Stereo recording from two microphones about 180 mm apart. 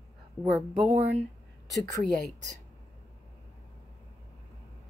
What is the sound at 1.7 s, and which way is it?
Speech, 20° left (ahead or behind).